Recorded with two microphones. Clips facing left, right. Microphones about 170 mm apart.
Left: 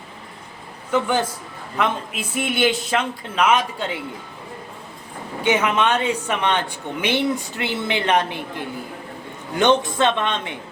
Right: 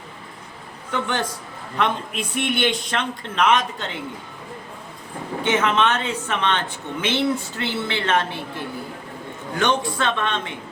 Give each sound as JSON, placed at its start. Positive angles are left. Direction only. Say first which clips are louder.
{"t": 0.9, "sound": "a man's voice", "louder": "left 4 dB", "side_deg": 5}
{"t": 5.4, "sound": "a man's voice", "louder": "left 1 dB", "side_deg": 10}